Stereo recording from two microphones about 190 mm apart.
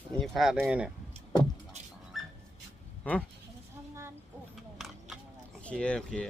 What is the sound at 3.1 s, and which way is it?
Speech, 10° left (ahead or behind).